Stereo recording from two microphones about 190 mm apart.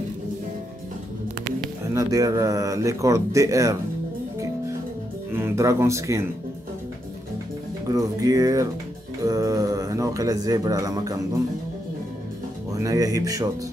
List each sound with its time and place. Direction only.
2.0 s speech: 20° right (ahead or behind)
5.3 s speech: 15° right (ahead or behind)
7.9 s speech: 20° right (ahead or behind)
12.7 s speech: 20° right (ahead or behind)